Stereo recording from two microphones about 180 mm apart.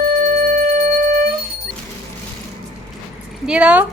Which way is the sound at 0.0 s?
45° right (ahead or behind).